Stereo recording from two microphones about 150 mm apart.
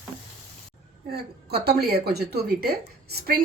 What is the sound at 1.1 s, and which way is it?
A woman's voice, 90° right.